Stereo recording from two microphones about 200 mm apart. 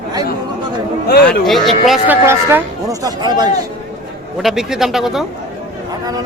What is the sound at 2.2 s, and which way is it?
Speech, 15° right (ahead or behind).